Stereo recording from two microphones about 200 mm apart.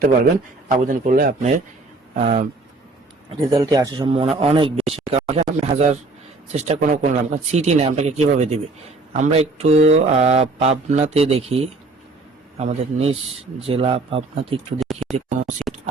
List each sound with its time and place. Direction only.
0.7 s speech: 40° right (ahead or behind)
3.4 s a man's voice: 20° right (ahead or behind); by 15.5 s 35° right (ahead or behind)